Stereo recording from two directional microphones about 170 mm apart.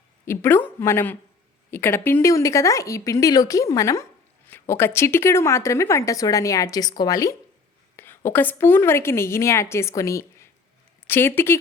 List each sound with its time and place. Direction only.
0.3 s a woman's voice: 10° left (ahead or behind)